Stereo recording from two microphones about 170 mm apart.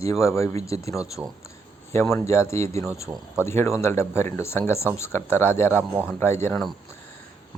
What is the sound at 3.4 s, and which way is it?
Speech, 15° left (ahead or behind).